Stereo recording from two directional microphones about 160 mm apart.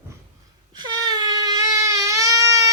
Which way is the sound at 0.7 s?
25° right (ahead or behind).